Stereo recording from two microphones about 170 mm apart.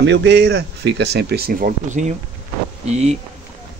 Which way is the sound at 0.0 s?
90° right.